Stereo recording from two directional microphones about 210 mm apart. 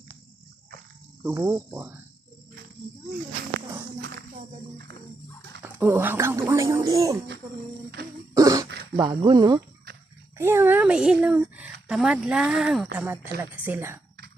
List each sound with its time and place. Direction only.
1.2 s speech: 10° right (ahead or behind)
5.6 s speech: 10° right (ahead or behind)
8.4 s throat clearing: 15° right (ahead or behind)
9.0 s a woman's voice: 20° right (ahead or behind)